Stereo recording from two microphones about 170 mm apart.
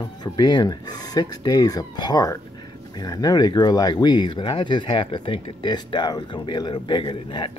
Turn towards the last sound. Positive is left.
turn(degrees=30)  # may be behind; listen again after turning